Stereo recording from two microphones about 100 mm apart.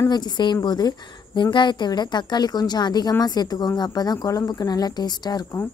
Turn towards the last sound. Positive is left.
turn(degrees=40)  # may be behind; listen again after turning